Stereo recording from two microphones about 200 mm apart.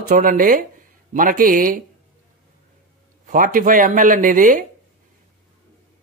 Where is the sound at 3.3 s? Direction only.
40° right (ahead or behind).